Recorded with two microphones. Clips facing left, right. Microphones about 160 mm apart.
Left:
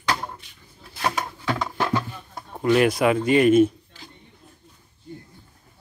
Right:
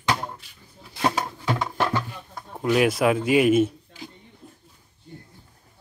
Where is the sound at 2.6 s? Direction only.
5° right (ahead or behind).